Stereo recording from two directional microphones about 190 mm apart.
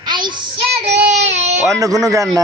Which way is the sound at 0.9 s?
35° right (ahead or behind).